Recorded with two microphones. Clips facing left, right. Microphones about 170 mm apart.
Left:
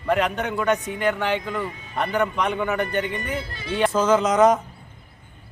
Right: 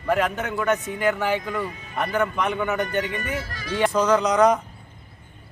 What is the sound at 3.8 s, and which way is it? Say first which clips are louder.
Speech: left 1 dB; centre (ahead or behind).